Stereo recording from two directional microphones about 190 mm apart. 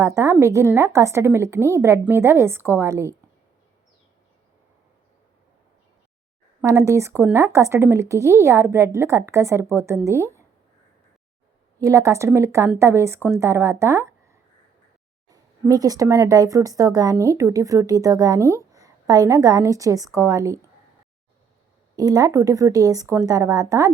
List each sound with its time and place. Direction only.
0.0 s speech: 15° right (ahead or behind)
6.6 s speech: 15° right (ahead or behind)
11.8 s speech: 15° right (ahead or behind)
15.3 s speech: 20° right (ahead or behind)
21.9 s speech: 20° right (ahead or behind)